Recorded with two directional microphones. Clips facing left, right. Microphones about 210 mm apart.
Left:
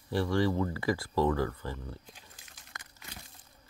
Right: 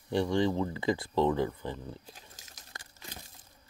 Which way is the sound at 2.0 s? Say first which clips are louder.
Right 2 dB; 40° right (ahead or behind).